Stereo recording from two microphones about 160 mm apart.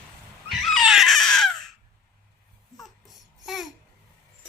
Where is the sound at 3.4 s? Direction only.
Centre (ahead or behind).